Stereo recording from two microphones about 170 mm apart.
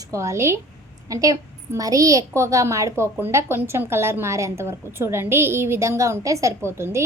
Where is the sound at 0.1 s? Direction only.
15° right (ahead or behind).